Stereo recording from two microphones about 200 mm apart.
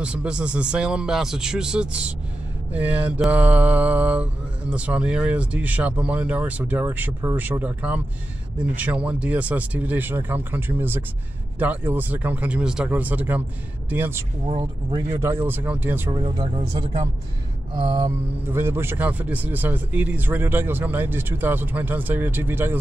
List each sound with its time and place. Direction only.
0.0 s speech: 5° right (ahead or behind)
2.7 s mantra: 5° right (ahead or behind)
14.4 s mantra: 25° right (ahead or behind)
16.1 s speech: 25° right (ahead or behind)
18.5 s mantra: 10° right (ahead or behind)